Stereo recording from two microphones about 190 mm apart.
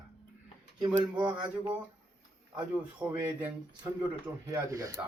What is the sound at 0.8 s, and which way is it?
Speech, 5° right (ahead or behind).